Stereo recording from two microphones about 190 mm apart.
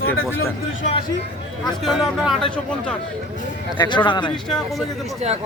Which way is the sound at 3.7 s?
25° left (ahead or behind).